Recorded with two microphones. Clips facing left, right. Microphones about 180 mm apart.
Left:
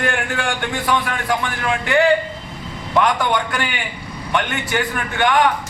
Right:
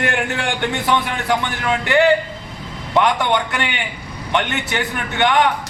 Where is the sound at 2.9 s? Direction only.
25° right (ahead or behind).